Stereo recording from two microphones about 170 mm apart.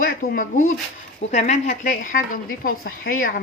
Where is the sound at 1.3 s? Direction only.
45° left (ahead or behind).